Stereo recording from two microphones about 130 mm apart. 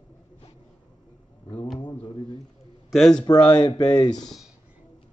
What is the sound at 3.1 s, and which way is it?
Speech, 30° left (ahead or behind).